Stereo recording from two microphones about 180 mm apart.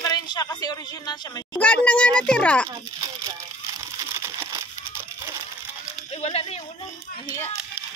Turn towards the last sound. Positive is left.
turn(degrees=35)  # may be behind; listen again after turning